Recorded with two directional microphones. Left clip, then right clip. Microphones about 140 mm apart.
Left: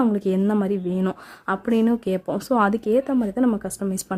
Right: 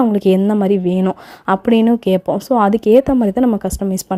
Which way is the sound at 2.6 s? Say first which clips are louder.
Right 9 dB; 35° right (ahead or behind).